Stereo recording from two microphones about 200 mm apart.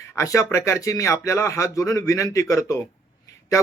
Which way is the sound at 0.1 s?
15° left (ahead or behind).